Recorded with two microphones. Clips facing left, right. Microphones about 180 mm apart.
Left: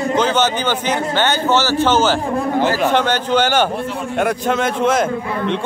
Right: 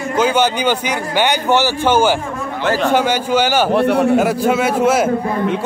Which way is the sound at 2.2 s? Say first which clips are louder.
Left 5 dB; 35° left (ahead or behind).